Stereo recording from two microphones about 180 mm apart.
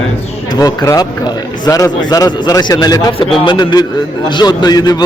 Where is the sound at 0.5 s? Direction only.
20° left (ahead or behind).